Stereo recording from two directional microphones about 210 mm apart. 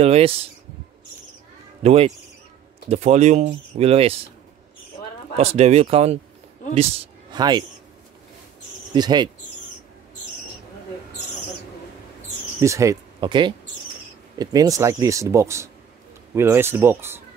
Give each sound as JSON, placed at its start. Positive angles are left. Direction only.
{"t": 0.0, "sound": "speech", "side_deg": -30}
{"t": 1.8, "sound": "speech", "side_deg": -30}
{"t": 5.4, "sound": "a man's voice", "side_deg": -30}
{"t": 8.9, "sound": "speech", "side_deg": -20}
{"t": 12.5, "sound": "speech", "side_deg": -15}